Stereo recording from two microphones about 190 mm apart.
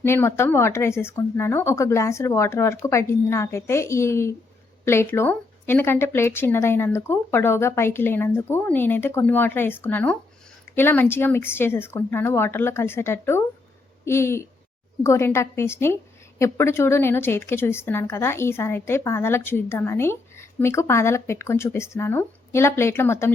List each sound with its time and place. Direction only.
0.0 s a woman's voice: 15° left (ahead or behind)